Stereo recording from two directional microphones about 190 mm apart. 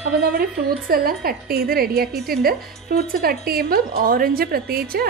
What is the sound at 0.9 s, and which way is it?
A woman's voice, 50° right (ahead or behind).